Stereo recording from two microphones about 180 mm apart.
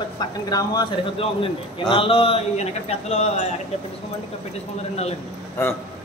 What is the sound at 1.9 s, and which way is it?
A man's voice, 30° left (ahead or behind).